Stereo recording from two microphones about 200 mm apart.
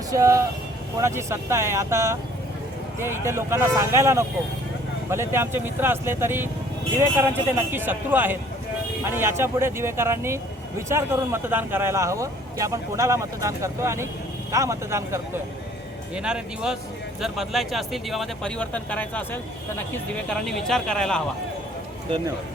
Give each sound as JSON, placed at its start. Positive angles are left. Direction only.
{"t": 0.1, "sound": "speech", "side_deg": -15}